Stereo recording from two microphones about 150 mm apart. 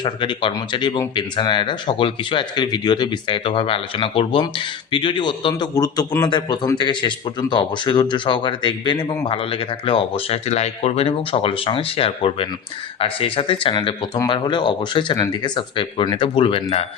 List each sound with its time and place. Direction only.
0.0 s speech: 30° left (ahead or behind)